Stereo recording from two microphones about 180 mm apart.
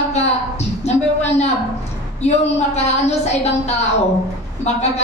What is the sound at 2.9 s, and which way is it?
Speech, 35° left (ahead or behind).